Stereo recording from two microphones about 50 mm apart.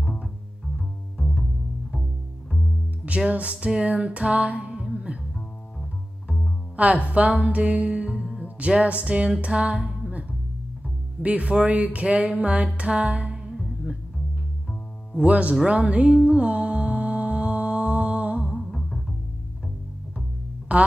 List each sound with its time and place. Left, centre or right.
0.7 s cello: centre
3.3 s music: right
5.3 s double bass: centre
7.1 s music: right
11.2 s music: right
15.1 s music: right
18.7 s music: centre
20.7 s speech: right